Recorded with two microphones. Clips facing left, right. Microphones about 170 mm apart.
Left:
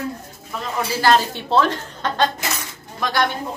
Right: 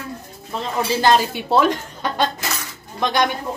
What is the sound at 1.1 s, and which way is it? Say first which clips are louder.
A woman's voice: right 1 dB; 15° right (ahead or behind).